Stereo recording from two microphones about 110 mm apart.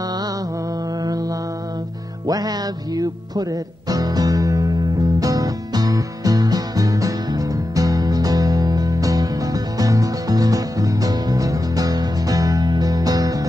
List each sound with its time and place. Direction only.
2.2 s music: 35° right (ahead or behind)
3.9 s music: 35° right (ahead or behind)